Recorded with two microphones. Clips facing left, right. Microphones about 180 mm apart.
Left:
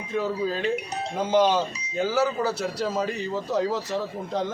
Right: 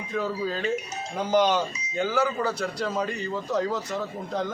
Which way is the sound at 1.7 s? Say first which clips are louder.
Left 1 dB; 65° left (ahead or behind).